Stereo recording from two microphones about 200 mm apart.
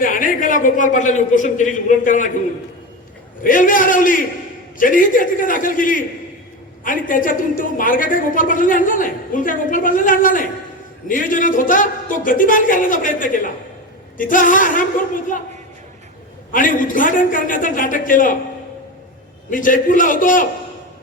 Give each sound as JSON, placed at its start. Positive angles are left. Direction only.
{"t": 0.0, "sound": "a man's voice", "side_deg": 40}
{"t": 3.4, "sound": "a man's voice", "side_deg": 40}
{"t": 16.5, "sound": "a man's voice", "side_deg": 40}
{"t": 19.5, "sound": "a man's voice", "side_deg": 40}